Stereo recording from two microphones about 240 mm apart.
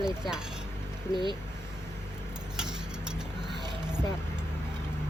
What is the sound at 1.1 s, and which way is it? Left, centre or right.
Speech, centre.